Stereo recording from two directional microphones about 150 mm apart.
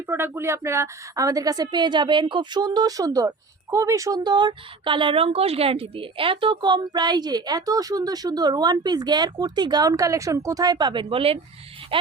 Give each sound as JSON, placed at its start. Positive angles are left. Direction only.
{"t": 0.1, "sound": "a woman's voice", "side_deg": -15}